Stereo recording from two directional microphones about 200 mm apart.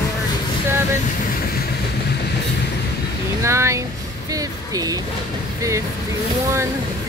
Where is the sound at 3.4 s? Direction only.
15° right (ahead or behind).